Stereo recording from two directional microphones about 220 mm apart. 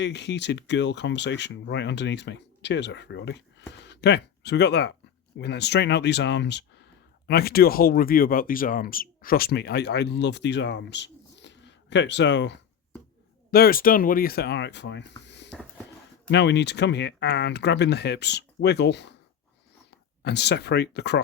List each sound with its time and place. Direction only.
0.0 s speech: 50° left (ahead or behind)
13.5 s speech: 40° left (ahead or behind)
20.2 s speech: 50° left (ahead or behind)